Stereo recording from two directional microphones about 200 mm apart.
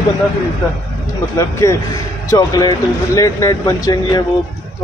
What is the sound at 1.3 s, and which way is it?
A man's voice, 15° left (ahead or behind).